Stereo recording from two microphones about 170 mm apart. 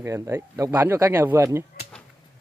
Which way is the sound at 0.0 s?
15° right (ahead or behind).